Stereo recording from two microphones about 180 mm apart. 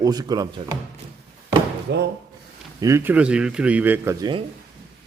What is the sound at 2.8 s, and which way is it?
Speech, 15° right (ahead or behind).